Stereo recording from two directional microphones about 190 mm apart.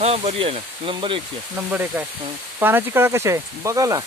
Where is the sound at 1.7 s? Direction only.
10° right (ahead or behind).